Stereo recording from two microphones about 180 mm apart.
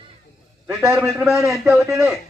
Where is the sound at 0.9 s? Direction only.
15° right (ahead or behind).